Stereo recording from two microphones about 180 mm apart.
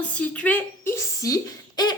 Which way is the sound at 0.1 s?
5° left (ahead or behind).